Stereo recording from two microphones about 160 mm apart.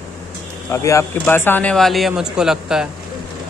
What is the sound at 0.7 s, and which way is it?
Speech, 20° left (ahead or behind).